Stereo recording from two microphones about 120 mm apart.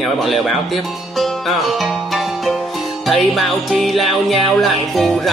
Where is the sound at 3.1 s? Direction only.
Centre (ahead or behind).